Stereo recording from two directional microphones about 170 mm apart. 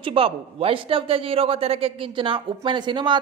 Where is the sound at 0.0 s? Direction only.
30° right (ahead or behind).